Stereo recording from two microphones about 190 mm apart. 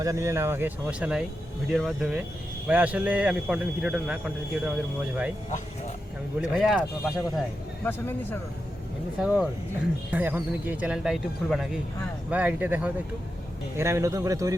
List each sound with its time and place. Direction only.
0.0 s a man's voice: 15° right (ahead or behind)
6.5 s speech: centre (ahead or behind)
7.9 s speech: 10° left (ahead or behind)
9.1 s a man's voice: 5° right (ahead or behind)